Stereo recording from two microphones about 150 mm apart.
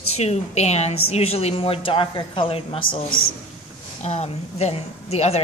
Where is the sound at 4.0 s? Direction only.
45° left (ahead or behind).